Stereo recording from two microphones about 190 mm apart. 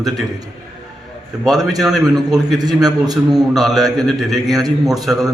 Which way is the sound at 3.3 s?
Centre (ahead or behind).